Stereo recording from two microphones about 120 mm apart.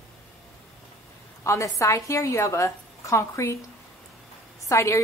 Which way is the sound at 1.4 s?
25° left (ahead or behind).